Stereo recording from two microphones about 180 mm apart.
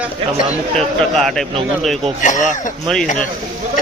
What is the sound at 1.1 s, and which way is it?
Speech, centre (ahead or behind).